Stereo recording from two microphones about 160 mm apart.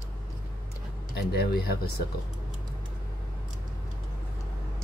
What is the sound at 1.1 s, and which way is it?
Speech, 80° left.